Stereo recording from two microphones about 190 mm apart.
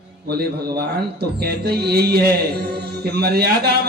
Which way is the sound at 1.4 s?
55° right (ahead or behind).